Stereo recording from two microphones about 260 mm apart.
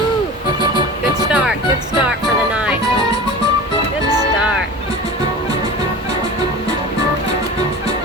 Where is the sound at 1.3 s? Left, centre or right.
Centre.